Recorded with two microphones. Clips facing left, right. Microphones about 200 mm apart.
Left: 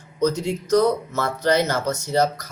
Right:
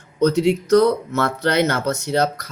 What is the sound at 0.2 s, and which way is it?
Speech, 65° right (ahead or behind).